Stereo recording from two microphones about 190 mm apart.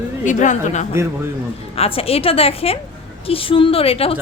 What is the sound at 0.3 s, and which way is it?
A woman's voice, 40° left (ahead or behind).